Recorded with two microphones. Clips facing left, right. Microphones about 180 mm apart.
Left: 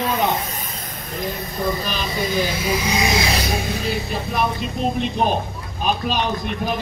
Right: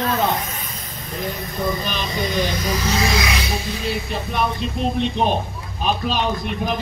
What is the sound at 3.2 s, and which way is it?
Music, 35° left (ahead or behind).